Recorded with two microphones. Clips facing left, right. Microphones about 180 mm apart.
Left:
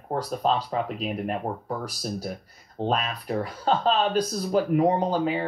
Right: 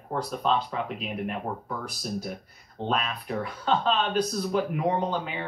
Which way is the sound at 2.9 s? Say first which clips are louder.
Left 2 dB; 40° left (ahead or behind).